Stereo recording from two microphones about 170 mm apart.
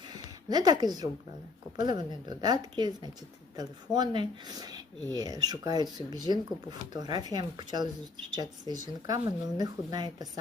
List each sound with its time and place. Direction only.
0.1 s a woman's voice: 25° right (ahead or behind)